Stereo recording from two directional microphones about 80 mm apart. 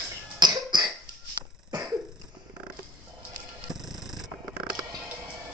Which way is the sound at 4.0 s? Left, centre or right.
Centre.